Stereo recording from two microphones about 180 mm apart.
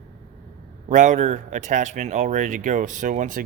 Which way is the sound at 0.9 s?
45° right (ahead or behind).